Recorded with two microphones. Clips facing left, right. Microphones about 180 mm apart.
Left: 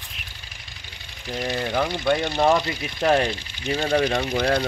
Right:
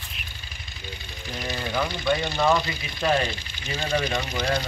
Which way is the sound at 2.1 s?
55° left (ahead or behind).